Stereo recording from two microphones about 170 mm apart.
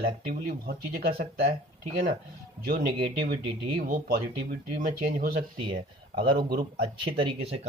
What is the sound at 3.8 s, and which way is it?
Speech, 60° right (ahead or behind).